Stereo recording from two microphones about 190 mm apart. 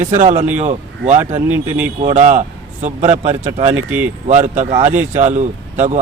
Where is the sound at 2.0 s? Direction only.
35° right (ahead or behind).